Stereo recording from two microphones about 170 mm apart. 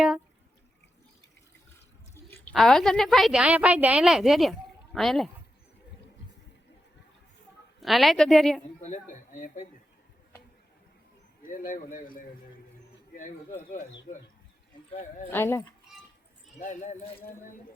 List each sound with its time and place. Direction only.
2.5 s a woman's voice: centre (ahead or behind)
7.8 s a woman's voice: centre (ahead or behind)
8.8 s speech: 45° left (ahead or behind)
11.4 s speech: 55° left (ahead or behind)
14.1 s speech: 30° left (ahead or behind)
15.3 s speech: 15° left (ahead or behind)
16.6 s speech: 55° left (ahead or behind)